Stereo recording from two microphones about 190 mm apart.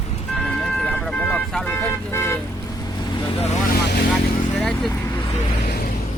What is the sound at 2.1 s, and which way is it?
Speech, 15° left (ahead or behind).